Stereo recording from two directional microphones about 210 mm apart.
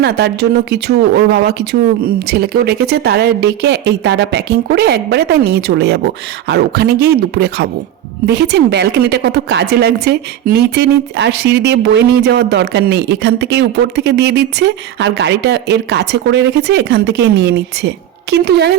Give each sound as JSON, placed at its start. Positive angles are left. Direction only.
{"t": 0.0, "sound": "a woman's voice", "side_deg": -50}